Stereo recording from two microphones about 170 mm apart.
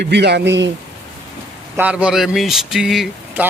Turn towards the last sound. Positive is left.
turn(degrees=0)  # may be behind; listen again after turning